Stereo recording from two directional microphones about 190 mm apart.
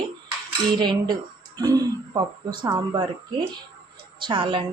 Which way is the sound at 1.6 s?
20° right (ahead or behind).